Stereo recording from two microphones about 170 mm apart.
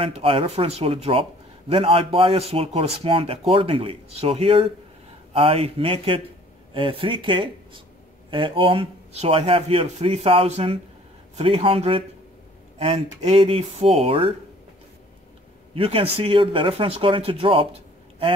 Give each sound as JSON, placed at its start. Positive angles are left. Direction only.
{"t": 0.0, "sound": "speech", "side_deg": -35}
{"t": 15.7, "sound": "speech", "side_deg": -35}